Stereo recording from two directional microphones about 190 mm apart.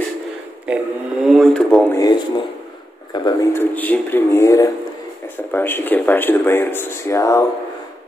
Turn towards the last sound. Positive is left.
turn(degrees=15)  # may be behind; listen again after turning